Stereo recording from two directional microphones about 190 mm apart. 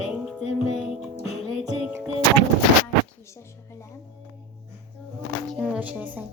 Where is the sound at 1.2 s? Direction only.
35° left (ahead or behind).